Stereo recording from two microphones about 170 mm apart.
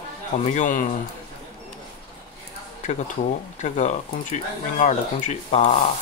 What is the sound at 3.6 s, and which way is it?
Speech, 45° left (ahead or behind).